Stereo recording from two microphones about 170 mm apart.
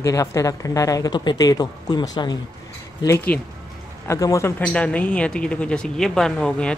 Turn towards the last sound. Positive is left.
turn(degrees=5)  # may be behind; listen again after turning